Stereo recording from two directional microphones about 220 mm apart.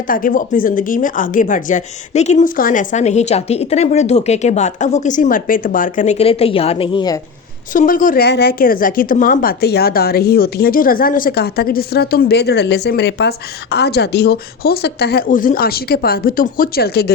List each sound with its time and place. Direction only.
0.1 s speech: 40° left (ahead or behind); by 7.2 s 20° left (ahead or behind)
7.7 s a woman's voice: 35° left (ahead or behind)